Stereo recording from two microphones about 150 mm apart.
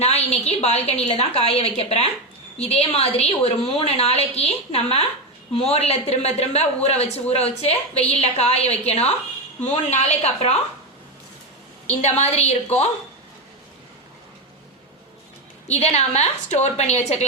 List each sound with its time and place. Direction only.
0.0 s a woman's voice: 45° left (ahead or behind)
11.9 s a woman's voice: 45° left (ahead or behind)
15.6 s a woman's voice: 45° left (ahead or behind)